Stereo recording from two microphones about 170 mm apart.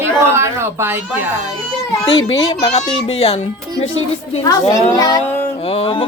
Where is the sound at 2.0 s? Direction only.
30° left (ahead or behind).